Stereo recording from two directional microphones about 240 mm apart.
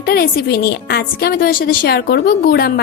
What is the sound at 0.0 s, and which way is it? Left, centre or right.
A woman's voice, left.